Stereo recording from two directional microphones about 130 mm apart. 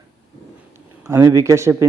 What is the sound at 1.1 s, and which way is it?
Speech, 25° right (ahead or behind).